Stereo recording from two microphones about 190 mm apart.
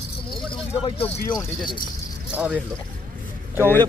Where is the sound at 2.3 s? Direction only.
5° right (ahead or behind).